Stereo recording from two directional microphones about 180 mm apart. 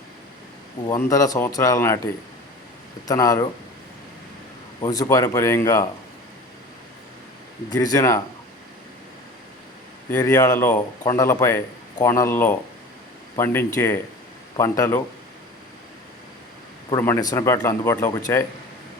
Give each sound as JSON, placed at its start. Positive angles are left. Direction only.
{"t": 0.9, "sound": "a man's voice", "side_deg": 20}
{"t": 3.1, "sound": "a man's voice", "side_deg": 20}
{"t": 4.8, "sound": "a man's voice", "side_deg": 20}
{"t": 7.7, "sound": "a man's voice", "side_deg": 20}
{"t": 10.1, "sound": "a man's voice", "side_deg": 10}
{"t": 17.0, "sound": "a man's voice", "side_deg": 15}